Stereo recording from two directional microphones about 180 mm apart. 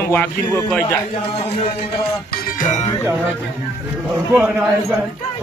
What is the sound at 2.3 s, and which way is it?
Music, 45° left (ahead or behind).